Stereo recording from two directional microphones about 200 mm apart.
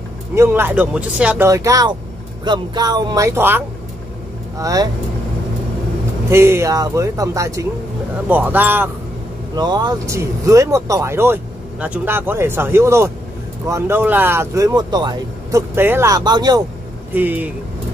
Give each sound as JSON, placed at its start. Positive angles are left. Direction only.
{"t": 0.3, "sound": "speech", "side_deg": -10}
{"t": 6.3, "sound": "speech", "side_deg": -10}
{"t": 9.6, "sound": "speech", "side_deg": -20}
{"t": 15.7, "sound": "speech", "side_deg": -10}
{"t": 17.1, "sound": "speech", "side_deg": -10}